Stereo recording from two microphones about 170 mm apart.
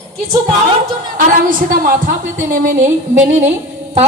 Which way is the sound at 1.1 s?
55° right (ahead or behind).